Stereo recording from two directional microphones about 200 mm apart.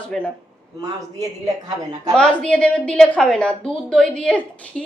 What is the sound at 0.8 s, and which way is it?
Speech, 15° right (ahead or behind).